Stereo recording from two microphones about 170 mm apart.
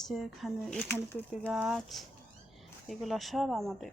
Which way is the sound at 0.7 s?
15° left (ahead or behind).